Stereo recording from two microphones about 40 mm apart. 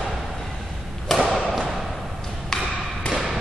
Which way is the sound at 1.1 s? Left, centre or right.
Centre.